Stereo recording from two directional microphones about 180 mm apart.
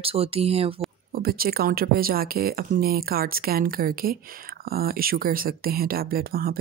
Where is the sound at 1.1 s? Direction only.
55° right (ahead or behind).